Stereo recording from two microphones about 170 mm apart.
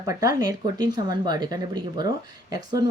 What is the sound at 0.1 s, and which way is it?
Speech, 20° right (ahead or behind).